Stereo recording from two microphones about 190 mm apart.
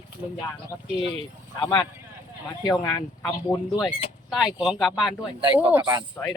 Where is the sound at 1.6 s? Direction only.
25° left (ahead or behind).